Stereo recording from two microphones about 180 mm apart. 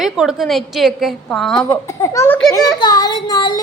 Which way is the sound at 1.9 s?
15° left (ahead or behind).